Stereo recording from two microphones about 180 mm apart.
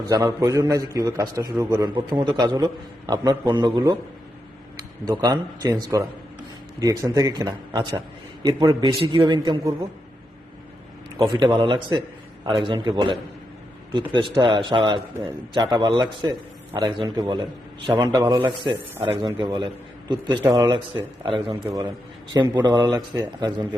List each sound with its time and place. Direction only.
0.1 s a man's voice: 20° right (ahead or behind)
5.0 s a man's voice: 20° right (ahead or behind)
11.2 s a man's voice: 25° right (ahead or behind)